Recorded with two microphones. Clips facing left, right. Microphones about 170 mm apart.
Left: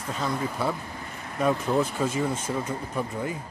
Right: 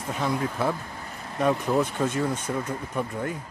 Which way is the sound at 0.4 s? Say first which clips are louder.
Right 1 dB; centre (ahead or behind).